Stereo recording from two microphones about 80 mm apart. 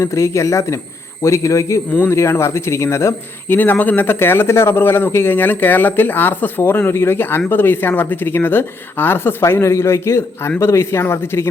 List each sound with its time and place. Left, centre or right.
0.0 s speech: left
3.5 s speech: left